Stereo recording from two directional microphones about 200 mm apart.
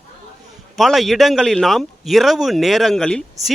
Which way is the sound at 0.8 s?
Centre (ahead or behind).